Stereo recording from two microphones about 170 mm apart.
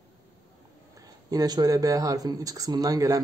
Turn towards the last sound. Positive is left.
turn(degrees=-20)  # may be behind; listen again after turning